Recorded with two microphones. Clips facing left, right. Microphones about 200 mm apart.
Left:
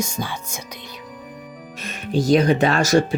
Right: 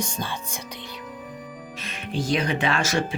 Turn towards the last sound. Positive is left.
turn(degrees=40)  # may be behind; listen again after turning